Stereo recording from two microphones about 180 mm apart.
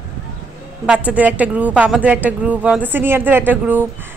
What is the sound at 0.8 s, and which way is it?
Speech, 10° right (ahead or behind).